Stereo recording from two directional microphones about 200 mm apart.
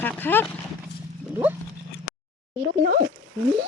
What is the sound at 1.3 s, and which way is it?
Pig, 10° right (ahead or behind).